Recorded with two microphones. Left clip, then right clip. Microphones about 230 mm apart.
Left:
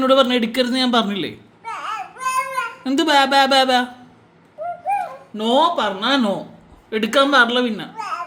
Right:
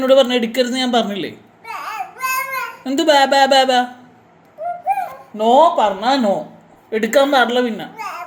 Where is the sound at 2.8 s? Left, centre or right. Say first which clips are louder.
Right 3 dB; left.